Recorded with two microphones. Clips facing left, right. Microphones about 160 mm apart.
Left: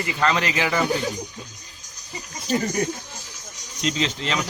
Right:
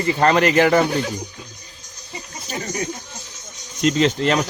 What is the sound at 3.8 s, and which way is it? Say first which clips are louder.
Speech: right 8 dB; 50° right (ahead or behind).